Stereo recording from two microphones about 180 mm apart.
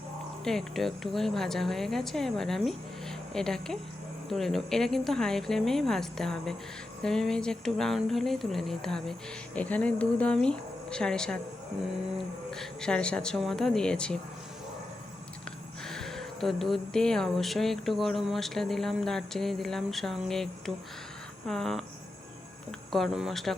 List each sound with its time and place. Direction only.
0.4 s speech: centre (ahead or behind)
12.5 s speech: 5° left (ahead or behind)
15.8 s speech: centre (ahead or behind)
22.9 s speech: centre (ahead or behind)